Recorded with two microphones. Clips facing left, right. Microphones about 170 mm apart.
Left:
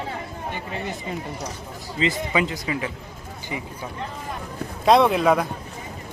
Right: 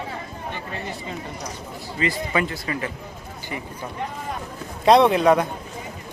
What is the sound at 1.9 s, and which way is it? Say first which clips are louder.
Speech: left 1 dB; 20° left (ahead or behind).